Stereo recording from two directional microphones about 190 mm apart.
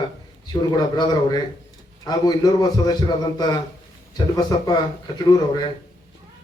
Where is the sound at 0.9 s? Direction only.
20° left (ahead or behind).